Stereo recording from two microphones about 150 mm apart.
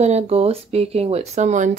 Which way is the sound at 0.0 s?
45° right (ahead or behind).